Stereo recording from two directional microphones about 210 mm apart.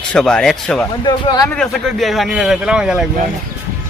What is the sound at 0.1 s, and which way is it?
Speech, 5° left (ahead or behind).